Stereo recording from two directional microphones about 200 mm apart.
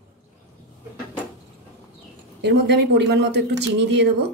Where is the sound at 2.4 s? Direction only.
60° right (ahead or behind).